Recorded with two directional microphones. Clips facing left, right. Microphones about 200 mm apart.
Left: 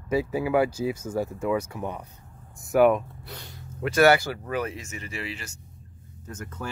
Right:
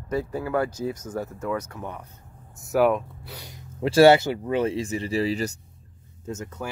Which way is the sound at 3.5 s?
25° right (ahead or behind).